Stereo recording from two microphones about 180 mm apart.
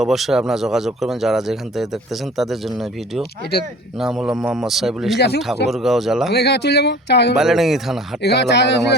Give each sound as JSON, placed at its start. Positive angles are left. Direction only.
{"t": 0.0, "sound": "speech", "side_deg": 0}
{"t": 5.1, "sound": "speech", "side_deg": 65}
{"t": 5.7, "sound": "speech", "side_deg": 0}
{"t": 6.3, "sound": "speech", "side_deg": 65}
{"t": 7.3, "sound": "speech", "side_deg": 0}
{"t": 8.2, "sound": "speech", "side_deg": 65}